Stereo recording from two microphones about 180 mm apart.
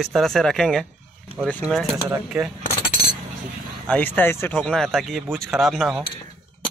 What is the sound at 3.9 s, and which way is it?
Speech, 10° left (ahead or behind).